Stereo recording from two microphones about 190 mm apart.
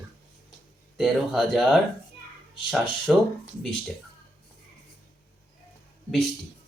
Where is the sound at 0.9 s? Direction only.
Centre (ahead or behind).